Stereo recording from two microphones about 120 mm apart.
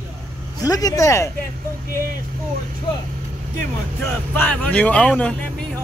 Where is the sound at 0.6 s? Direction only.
30° left (ahead or behind).